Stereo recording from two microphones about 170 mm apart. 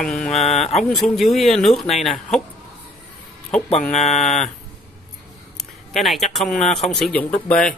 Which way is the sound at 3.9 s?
40° left (ahead or behind).